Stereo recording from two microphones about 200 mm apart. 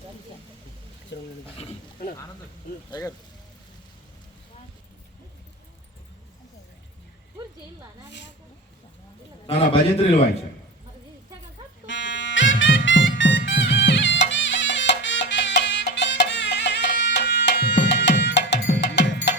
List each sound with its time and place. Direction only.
1.1 s speech: 60° left (ahead or behind)
9.5 s a man's voice: 30° left (ahead or behind)
11.9 s music: 65° left (ahead or behind)